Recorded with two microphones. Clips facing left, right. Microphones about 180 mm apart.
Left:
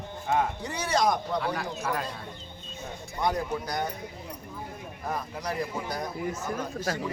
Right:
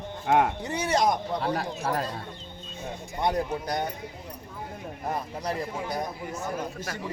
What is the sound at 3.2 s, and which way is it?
Speech, 25° right (ahead or behind).